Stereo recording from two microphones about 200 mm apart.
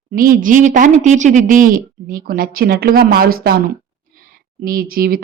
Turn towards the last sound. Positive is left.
turn(degrees=-45)  # may be behind; listen again after turning